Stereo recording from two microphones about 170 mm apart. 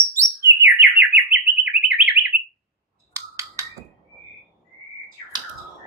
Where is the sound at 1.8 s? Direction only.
5° right (ahead or behind).